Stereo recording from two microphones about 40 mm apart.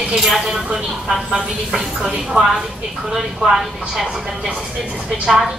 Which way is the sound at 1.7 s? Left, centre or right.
Centre.